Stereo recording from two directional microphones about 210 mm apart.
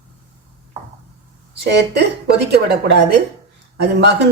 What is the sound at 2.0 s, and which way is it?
Speech, 50° right (ahead or behind).